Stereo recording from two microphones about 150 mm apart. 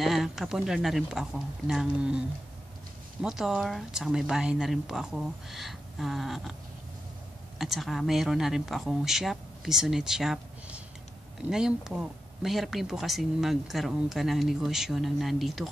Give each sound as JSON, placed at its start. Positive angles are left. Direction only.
{"t": 0.0, "sound": "speech", "side_deg": 0}
{"t": 7.5, "sound": "speech", "side_deg": 0}